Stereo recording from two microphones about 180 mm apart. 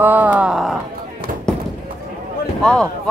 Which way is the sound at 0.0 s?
10° right (ahead or behind).